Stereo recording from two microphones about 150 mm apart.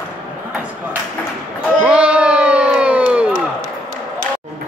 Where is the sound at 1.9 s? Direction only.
5° right (ahead or behind).